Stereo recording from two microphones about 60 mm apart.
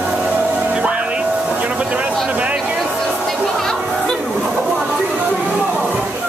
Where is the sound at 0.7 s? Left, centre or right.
Centre.